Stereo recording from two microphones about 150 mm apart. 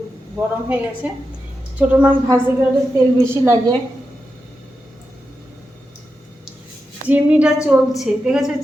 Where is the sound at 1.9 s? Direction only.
10° right (ahead or behind).